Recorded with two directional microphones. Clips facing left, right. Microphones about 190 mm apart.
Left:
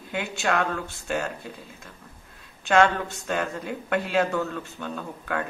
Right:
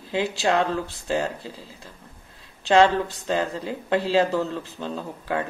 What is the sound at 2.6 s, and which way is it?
Speech, 30° right (ahead or behind).